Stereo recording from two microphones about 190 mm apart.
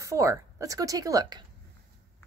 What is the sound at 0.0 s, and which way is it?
Speech, 15° right (ahead or behind).